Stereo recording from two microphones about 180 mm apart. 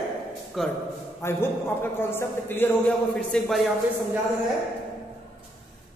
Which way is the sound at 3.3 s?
Centre (ahead or behind).